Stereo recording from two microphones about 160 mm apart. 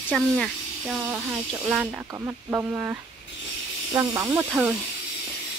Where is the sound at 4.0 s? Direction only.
15° right (ahead or behind).